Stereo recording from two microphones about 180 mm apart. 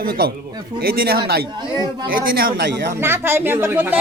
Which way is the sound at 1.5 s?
25° right (ahead or behind).